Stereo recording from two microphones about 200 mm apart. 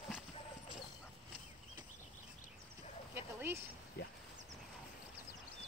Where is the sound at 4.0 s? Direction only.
55° left (ahead or behind).